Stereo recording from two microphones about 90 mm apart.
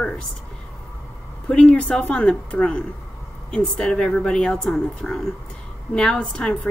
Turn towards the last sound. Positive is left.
turn(degrees=10)  # may be behind; listen again after turning